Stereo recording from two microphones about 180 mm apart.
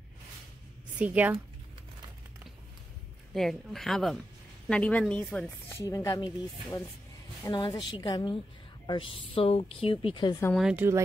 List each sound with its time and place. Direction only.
0.9 s a woman's voice: 10° right (ahead or behind)
3.3 s speech: centre (ahead or behind)
5.9 s a woman's voice: 20° left (ahead or behind)
7.4 s a woman's voice: 25° left (ahead or behind)
10.5 s speech: 5° right (ahead or behind)